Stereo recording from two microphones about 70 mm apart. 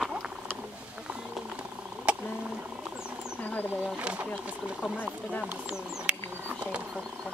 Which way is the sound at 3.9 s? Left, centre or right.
Centre.